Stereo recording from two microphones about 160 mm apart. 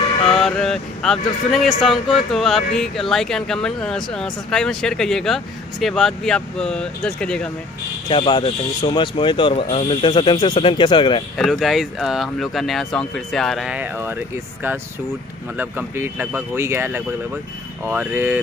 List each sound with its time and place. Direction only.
0.4 s speech: 5° left (ahead or behind)
8.1 s speech: 30° left (ahead or behind)
11.3 s speech: centre (ahead or behind)